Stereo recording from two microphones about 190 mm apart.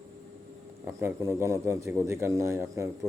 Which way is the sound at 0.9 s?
15° right (ahead or behind).